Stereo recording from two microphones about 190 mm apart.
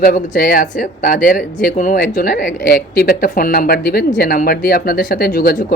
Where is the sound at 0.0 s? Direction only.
45° left (ahead or behind).